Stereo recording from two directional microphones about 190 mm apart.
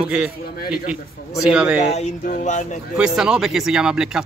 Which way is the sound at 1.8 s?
35° left (ahead or behind).